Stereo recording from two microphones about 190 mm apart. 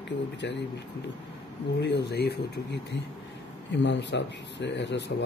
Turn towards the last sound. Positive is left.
turn(degrees=70)  # may be behind; listen again after turning